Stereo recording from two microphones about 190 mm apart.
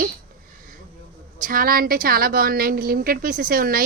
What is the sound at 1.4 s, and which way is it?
A woman's voice, 50° right (ahead or behind).